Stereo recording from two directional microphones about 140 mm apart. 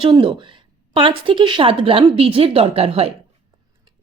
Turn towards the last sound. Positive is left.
turn(degrees=-45)  # may be behind; listen again after turning